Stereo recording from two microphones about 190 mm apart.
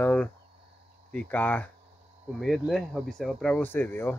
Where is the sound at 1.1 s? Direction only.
10° left (ahead or behind).